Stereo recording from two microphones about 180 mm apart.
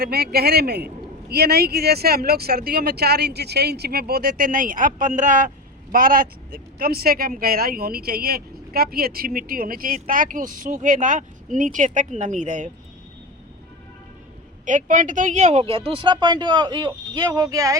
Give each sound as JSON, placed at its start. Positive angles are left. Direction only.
{"t": 0.0, "sound": "a man's voice", "side_deg": -60}
{"t": 14.6, "sound": "speech", "side_deg": -45}